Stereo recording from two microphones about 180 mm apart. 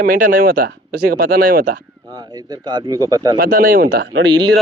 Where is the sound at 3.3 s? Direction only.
55° right (ahead or behind).